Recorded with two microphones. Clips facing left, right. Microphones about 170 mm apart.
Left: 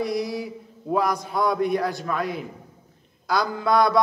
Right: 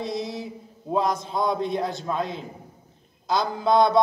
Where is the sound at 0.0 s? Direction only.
25° right (ahead or behind).